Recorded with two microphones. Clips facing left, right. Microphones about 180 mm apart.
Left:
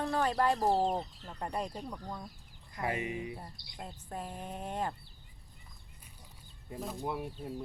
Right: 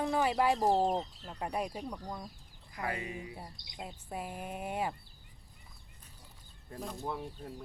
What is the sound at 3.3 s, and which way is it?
Speech, 10° right (ahead or behind).